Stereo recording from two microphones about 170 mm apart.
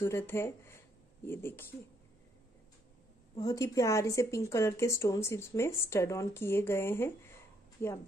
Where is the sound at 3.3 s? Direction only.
20° left (ahead or behind).